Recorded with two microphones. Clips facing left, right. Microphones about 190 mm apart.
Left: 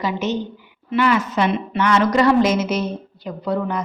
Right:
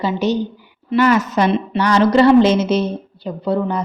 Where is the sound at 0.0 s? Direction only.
30° right (ahead or behind).